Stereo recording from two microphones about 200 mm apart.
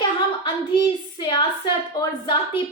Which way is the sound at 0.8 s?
25° left (ahead or behind).